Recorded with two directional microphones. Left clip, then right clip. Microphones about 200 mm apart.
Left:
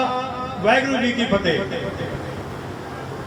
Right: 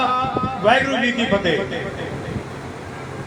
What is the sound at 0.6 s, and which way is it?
Speech, 30° right (ahead or behind).